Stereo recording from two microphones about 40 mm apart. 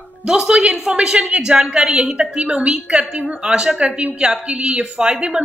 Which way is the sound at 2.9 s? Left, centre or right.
Centre.